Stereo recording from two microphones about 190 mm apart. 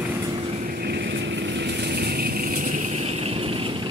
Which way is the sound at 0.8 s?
60° right (ahead or behind).